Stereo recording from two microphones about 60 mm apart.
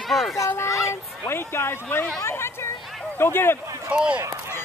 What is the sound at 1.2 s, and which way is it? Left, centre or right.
Speech, left.